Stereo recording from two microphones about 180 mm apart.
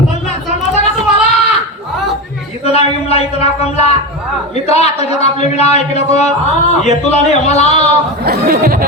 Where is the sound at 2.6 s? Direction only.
35° left (ahead or behind).